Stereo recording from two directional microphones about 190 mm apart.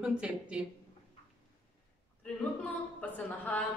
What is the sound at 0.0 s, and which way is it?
Speech, 5° right (ahead or behind).